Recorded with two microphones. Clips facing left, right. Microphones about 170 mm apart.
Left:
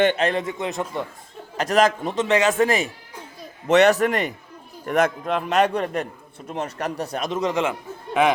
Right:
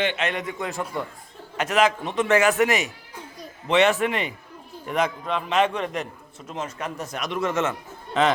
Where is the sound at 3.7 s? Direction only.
40° left (ahead or behind).